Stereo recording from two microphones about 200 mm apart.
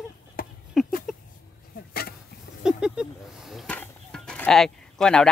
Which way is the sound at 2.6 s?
5° right (ahead or behind).